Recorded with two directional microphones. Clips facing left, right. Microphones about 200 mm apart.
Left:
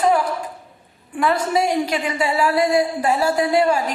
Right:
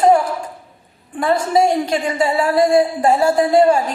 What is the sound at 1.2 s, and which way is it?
A man's voice, 45° right (ahead or behind).